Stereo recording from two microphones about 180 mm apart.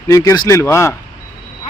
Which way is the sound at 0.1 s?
20° left (ahead or behind).